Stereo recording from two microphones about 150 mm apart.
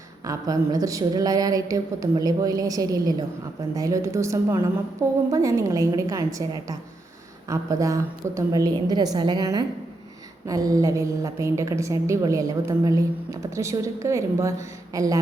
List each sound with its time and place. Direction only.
0.3 s a woman's voice: 25° right (ahead or behind)